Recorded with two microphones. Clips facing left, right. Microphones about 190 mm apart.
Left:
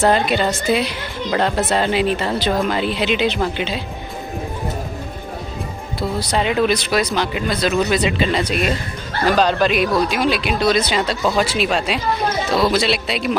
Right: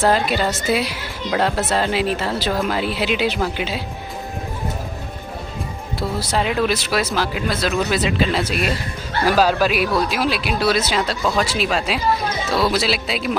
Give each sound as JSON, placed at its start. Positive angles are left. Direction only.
{"t": 0.0, "sound": "a woman's voice", "side_deg": 0}
{"t": 5.9, "sound": "a woman's voice", "side_deg": 0}